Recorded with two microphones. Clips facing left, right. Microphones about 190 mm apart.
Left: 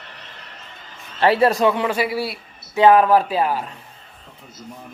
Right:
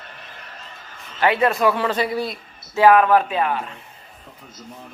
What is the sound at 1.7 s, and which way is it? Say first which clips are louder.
A man's voice: left 1 dB; 15° left (ahead or behind).